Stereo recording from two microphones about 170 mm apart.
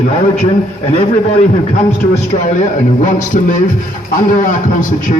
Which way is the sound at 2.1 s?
45° left (ahead or behind).